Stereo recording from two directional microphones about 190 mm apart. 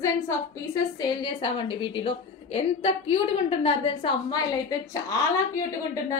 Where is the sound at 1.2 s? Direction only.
25° left (ahead or behind).